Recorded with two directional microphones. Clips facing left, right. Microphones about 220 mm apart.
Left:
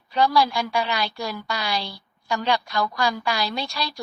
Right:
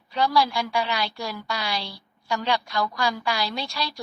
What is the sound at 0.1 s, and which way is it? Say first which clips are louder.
A woman's voice: left 2 dB; 50° left (ahead or behind).